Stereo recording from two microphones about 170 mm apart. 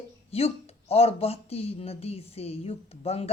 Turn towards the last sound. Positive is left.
turn(degrees=35)  # may be behind; listen again after turning